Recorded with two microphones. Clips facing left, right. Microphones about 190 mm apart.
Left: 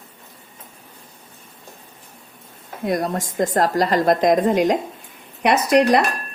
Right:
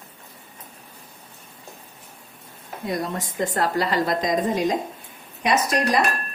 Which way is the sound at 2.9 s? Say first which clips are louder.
Left 5 dB; 45° left (ahead or behind).